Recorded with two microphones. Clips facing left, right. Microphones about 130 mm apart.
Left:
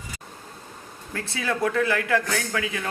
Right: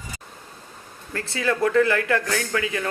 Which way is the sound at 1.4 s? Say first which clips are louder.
Right 4 dB; 5° left (ahead or behind).